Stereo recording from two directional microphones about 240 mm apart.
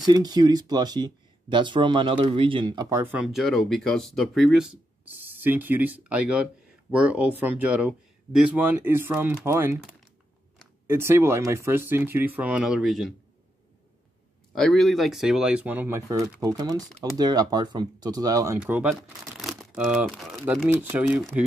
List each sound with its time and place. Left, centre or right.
0.0 s speech: centre
10.9 s speech: centre
14.5 s speech: centre